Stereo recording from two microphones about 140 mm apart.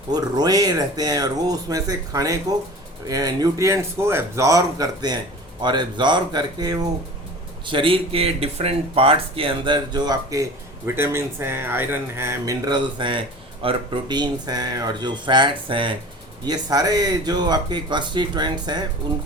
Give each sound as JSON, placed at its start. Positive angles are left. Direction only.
{"t": 0.1, "sound": "speech", "side_deg": -30}
{"t": 7.7, "sound": "speech", "side_deg": -40}